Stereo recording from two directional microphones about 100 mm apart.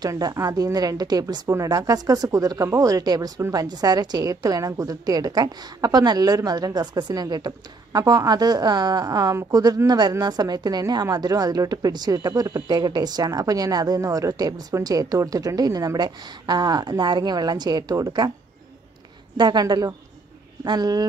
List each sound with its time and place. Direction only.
0.0 s a woman's voice: 40° right (ahead or behind)
19.3 s a woman's voice: 45° right (ahead or behind)